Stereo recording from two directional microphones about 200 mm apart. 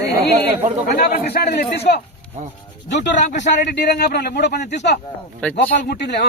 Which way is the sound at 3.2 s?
35° left (ahead or behind).